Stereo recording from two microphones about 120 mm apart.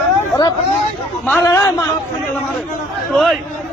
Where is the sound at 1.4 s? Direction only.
25° left (ahead or behind).